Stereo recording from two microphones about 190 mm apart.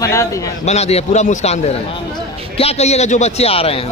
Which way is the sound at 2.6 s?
35° left (ahead or behind).